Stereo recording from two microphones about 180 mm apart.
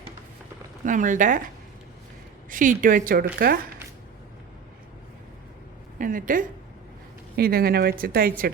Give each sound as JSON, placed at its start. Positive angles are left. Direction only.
{"t": 0.9, "sound": "a woman's voice", "side_deg": -45}
{"t": 2.5, "sound": "a woman's voice", "side_deg": -45}
{"t": 6.0, "sound": "a woman's voice", "side_deg": -50}